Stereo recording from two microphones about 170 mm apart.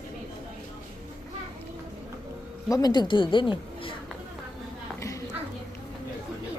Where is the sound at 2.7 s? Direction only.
25° left (ahead or behind).